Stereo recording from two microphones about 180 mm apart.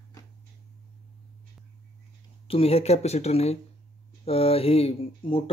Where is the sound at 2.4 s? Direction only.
35° left (ahead or behind).